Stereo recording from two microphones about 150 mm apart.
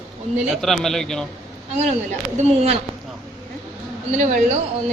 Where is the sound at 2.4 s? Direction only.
45° right (ahead or behind).